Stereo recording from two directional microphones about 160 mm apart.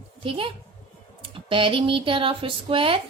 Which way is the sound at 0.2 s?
35° right (ahead or behind).